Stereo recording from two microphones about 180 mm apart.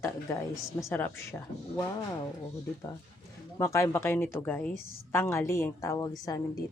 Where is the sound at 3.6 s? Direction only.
15° left (ahead or behind).